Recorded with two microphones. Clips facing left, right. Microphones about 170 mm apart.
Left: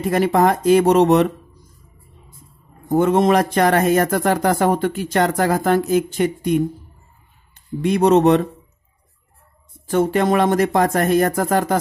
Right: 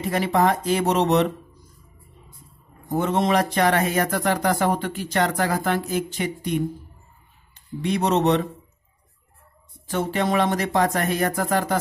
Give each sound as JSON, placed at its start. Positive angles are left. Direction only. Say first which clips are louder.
{"t": 0.1, "sound": "speech", "louder": "left 4 dB", "side_deg": 50}
{"t": 2.9, "sound": "speech", "louder": "left 6 dB", "side_deg": 50}
{"t": 9.8, "sound": "speech", "louder": "left 7 dB", "side_deg": 50}